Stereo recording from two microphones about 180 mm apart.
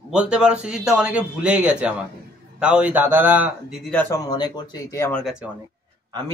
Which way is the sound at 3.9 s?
20° left (ahead or behind).